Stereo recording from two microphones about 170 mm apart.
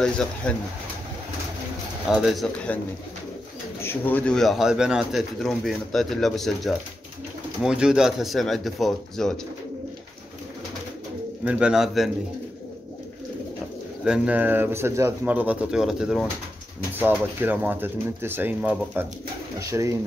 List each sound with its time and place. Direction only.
0.0 s speech: 5° left (ahead or behind)
2.0 s speech: centre (ahead or behind)
3.8 s speech: 10° left (ahead or behind)
11.4 s speech: 5° right (ahead or behind)
14.0 s speech: 5° right (ahead or behind)
19.6 s speech: 20° right (ahead or behind)